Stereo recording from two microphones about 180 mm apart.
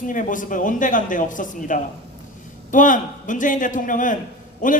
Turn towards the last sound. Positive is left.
turn(degrees=45)  # may be behind; listen again after turning